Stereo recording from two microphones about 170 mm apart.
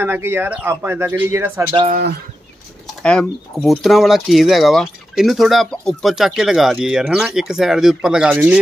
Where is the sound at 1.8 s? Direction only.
60° right (ahead or behind).